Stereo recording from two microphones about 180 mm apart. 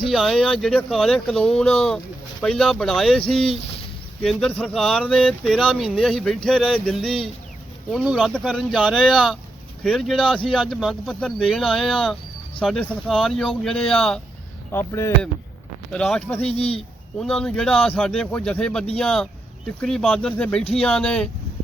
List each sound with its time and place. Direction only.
0.1 s speech: centre (ahead or behind)
14.7 s speech: 15° left (ahead or behind)
16.6 s speech: 35° left (ahead or behind)
17.2 s speech: 5° left (ahead or behind)